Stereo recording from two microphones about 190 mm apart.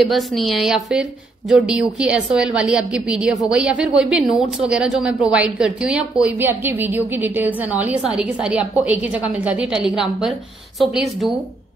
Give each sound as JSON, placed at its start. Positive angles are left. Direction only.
{"t": 0.0, "sound": "a woman's voice", "side_deg": 0}